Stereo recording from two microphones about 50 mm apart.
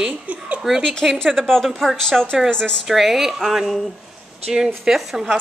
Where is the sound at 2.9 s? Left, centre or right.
Centre.